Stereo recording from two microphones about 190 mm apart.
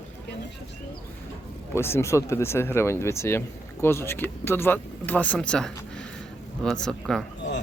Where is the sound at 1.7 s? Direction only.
15° left (ahead or behind).